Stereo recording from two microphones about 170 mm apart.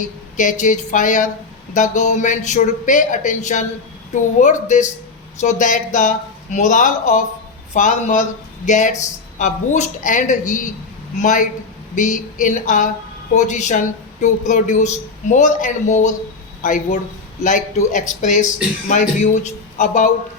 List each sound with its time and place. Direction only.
0.0 s speech: 45° left (ahead or behind)